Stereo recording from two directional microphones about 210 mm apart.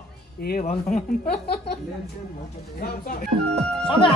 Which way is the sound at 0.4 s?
45° left (ahead or behind).